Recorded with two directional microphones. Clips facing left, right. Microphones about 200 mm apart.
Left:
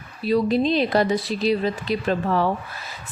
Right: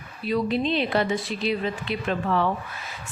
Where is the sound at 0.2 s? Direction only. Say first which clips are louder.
Left 5 dB; 35° left (ahead or behind).